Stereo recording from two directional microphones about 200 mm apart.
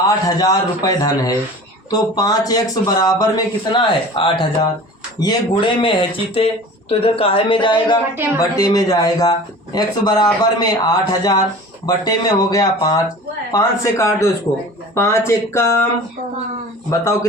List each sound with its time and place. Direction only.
0.0 s a man's voice: 20° left (ahead or behind)
16.9 s a man's voice: 15° left (ahead or behind)